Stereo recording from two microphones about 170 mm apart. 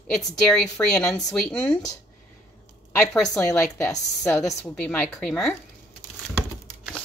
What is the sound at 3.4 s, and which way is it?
Speech, 5° left (ahead or behind).